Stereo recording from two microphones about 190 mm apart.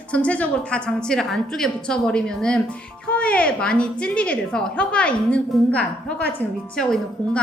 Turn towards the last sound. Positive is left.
turn(degrees=5)  # may be behind; listen again after turning